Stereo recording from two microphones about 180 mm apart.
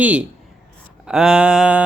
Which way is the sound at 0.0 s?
5° right (ahead or behind).